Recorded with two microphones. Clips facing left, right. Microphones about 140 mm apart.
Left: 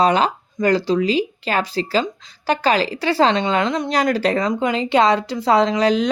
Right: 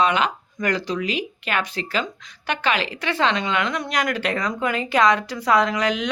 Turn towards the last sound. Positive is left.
turn(degrees=35)  # may be behind; listen again after turning